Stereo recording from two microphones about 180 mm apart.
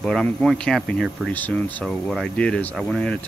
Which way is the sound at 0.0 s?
5° left (ahead or behind).